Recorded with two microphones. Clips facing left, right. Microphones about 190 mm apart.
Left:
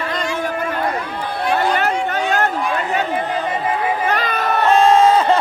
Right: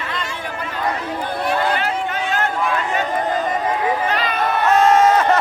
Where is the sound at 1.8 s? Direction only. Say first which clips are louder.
Left 3 dB; 45° left (ahead or behind).